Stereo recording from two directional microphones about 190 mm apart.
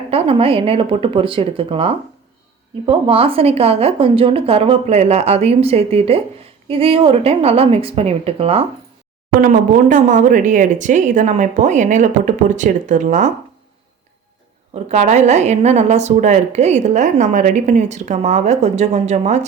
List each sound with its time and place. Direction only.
0.1 s a woman's voice: 30° right (ahead or behind)
9.4 s a woman's voice: 45° right (ahead or behind)
14.8 s a woman's voice: 40° right (ahead or behind)